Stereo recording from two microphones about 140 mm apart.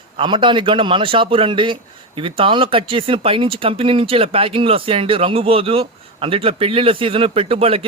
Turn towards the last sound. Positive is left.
turn(degrees=-40)  # may be behind; listen again after turning